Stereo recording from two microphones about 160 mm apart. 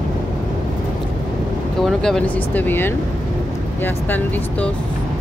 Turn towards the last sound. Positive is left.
turn(degrees=10)  # may be behind; listen again after turning